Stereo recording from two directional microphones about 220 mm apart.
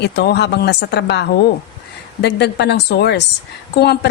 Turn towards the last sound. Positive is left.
turn(degrees=45)  # may be behind; listen again after turning